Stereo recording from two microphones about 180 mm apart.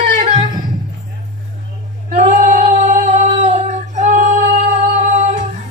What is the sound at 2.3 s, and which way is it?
Singing, 40° right (ahead or behind).